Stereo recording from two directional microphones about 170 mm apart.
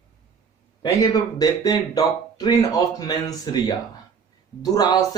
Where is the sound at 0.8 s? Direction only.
20° left (ahead or behind).